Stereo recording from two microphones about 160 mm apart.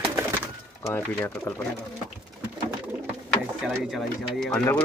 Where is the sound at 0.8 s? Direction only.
15° left (ahead or behind).